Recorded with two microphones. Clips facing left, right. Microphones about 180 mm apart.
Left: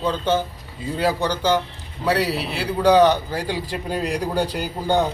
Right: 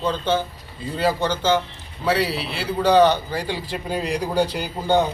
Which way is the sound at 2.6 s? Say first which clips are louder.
Left 1 dB; 10° left (ahead or behind).